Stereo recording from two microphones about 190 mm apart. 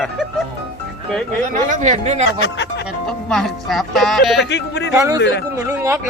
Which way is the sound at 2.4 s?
65° left (ahead or behind).